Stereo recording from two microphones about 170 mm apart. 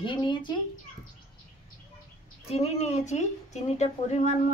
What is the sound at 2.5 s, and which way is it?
A woman's voice, 40° left (ahead or behind).